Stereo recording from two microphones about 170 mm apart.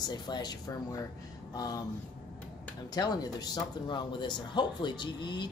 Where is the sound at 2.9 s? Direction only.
25° left (ahead or behind).